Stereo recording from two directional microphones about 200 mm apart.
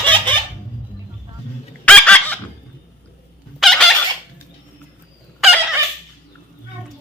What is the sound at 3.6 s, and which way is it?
Fowl, centre (ahead or behind).